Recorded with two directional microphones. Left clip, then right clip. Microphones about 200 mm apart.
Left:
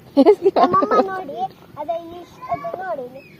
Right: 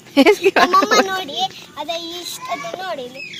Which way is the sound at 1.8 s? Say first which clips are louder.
Even; centre (ahead or behind).